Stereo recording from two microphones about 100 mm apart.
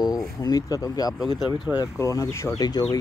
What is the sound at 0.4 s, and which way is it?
Speech, 40° left (ahead or behind).